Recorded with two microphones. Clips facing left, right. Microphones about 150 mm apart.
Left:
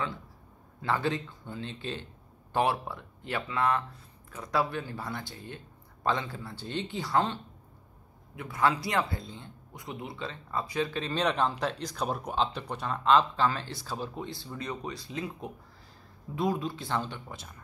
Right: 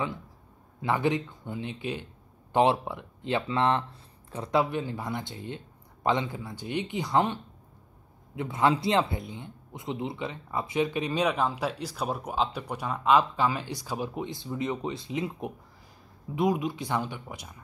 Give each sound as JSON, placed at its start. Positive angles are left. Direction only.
{"t": 0.7, "sound": "speech", "side_deg": -15}
{"t": 8.4, "sound": "speech", "side_deg": -20}